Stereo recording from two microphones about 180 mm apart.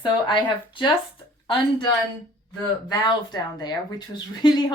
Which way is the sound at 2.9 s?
20° left (ahead or behind).